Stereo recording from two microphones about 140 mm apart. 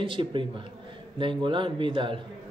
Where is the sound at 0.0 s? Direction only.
35° right (ahead or behind).